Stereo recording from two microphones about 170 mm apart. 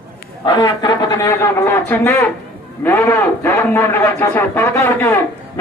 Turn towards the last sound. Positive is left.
turn(degrees=15)  # may be behind; listen again after turning